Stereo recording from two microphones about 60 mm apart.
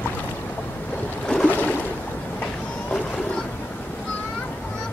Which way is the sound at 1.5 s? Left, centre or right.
Left.